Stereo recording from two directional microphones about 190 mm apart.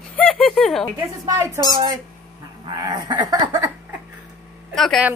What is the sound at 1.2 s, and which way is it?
Speech, 15° right (ahead or behind).